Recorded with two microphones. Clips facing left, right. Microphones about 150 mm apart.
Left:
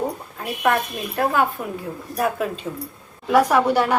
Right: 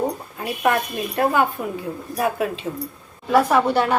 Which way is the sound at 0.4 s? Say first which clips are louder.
Even; centre (ahead or behind).